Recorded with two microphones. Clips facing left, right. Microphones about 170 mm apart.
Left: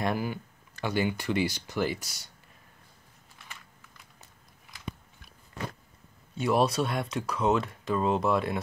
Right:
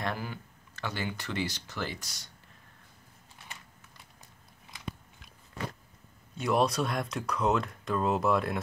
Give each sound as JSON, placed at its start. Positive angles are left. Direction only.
{"t": 0.0, "sound": "speech", "side_deg": 10}
{"t": 6.3, "sound": "speech", "side_deg": 0}